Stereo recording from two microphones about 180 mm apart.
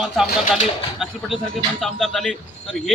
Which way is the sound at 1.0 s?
Centre (ahead or behind).